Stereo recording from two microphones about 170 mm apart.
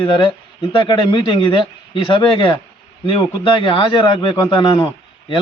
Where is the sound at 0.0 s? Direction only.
30° left (ahead or behind).